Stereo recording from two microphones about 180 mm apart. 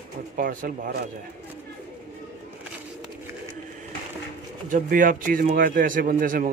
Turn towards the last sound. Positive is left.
turn(degrees=-50)  # may be behind; listen again after turning